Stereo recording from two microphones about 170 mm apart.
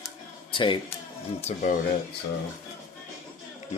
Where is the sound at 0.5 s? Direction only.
30° left (ahead or behind).